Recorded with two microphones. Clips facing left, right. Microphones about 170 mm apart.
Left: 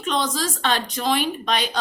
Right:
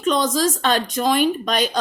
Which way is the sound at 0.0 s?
45° right (ahead or behind).